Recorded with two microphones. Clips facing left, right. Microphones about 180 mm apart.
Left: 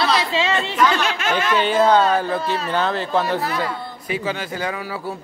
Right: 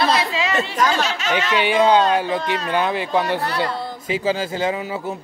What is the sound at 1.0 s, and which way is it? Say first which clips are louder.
Chatter: left 1 dB; 55° left (ahead or behind).